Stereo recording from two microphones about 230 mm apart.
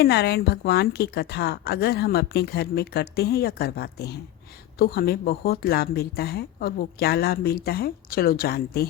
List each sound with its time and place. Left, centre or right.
0.0 s a woman's voice: left